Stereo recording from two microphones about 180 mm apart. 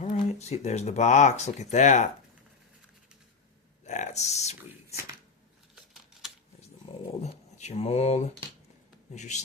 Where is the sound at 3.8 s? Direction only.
40° left (ahead or behind).